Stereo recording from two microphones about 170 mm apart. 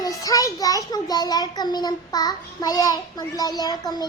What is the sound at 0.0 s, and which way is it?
A child's voice, 20° left (ahead or behind).